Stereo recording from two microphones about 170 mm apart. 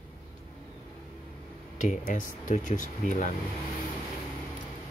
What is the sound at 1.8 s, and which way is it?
Speech, 45° left (ahead or behind).